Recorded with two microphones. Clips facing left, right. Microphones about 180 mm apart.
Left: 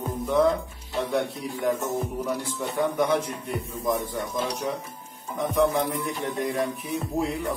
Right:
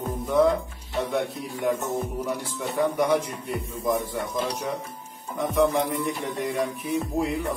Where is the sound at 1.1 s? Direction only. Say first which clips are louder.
Left 1 dB; centre (ahead or behind).